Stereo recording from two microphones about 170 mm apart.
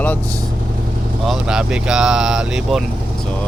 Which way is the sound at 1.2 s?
5° right (ahead or behind).